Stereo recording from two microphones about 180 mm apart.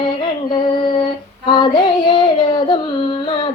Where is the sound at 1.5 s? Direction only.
25° left (ahead or behind).